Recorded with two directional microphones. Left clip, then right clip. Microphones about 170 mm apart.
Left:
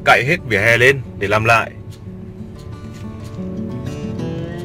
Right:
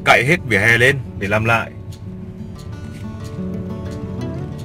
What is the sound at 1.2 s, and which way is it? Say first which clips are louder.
Speech: left 3 dB; 20° left (ahead or behind).